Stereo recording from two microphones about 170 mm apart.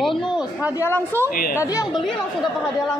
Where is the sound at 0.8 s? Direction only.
15° left (ahead or behind).